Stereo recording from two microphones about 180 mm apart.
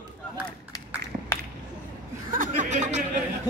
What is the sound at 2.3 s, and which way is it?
Speech, 45° right (ahead or behind).